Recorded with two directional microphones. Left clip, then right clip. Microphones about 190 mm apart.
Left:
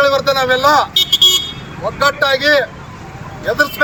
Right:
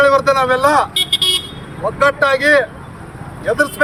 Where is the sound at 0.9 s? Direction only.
55° left (ahead or behind).